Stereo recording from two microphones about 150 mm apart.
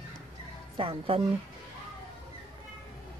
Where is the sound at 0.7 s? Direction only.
35° right (ahead or behind).